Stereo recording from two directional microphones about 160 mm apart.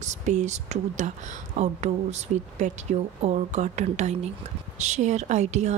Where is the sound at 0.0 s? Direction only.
50° right (ahead or behind).